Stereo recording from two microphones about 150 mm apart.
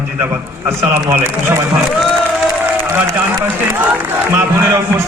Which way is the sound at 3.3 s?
15° right (ahead or behind).